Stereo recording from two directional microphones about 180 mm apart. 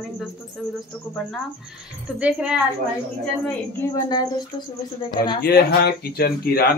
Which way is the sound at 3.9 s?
20° left (ahead or behind).